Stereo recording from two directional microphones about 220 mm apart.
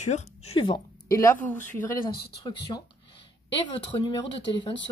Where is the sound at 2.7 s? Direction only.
20° left (ahead or behind).